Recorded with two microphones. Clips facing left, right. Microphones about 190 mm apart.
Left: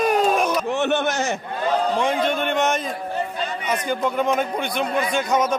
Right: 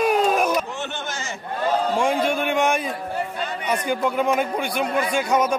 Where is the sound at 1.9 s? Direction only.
10° right (ahead or behind).